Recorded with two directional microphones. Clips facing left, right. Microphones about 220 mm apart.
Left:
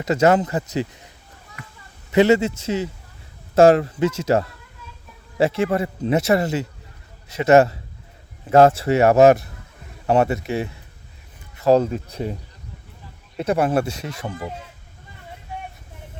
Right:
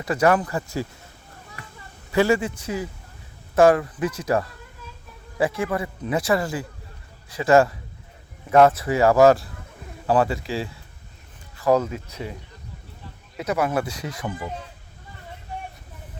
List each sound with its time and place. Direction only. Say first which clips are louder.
0.0 s speech: left 3 dB; 25° left (ahead or behind)
2.1 s speech: left 4 dB; 20° left (ahead or behind)
13.4 s speech: left 4 dB; 30° left (ahead or behind)